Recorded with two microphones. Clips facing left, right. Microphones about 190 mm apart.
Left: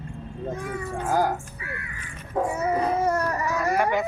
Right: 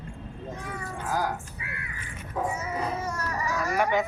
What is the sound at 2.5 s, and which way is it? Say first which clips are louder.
Baby cry: left 7 dB; 60° left (ahead or behind).